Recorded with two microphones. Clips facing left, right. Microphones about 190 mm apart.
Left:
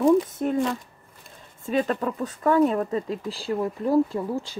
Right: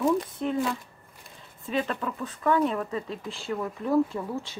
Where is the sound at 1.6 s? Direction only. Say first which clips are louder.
Left 5 dB; 40° left (ahead or behind).